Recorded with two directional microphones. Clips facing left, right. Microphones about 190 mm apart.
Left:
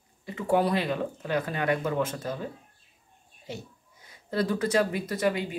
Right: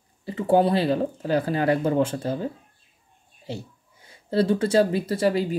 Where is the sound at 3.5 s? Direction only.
30° right (ahead or behind).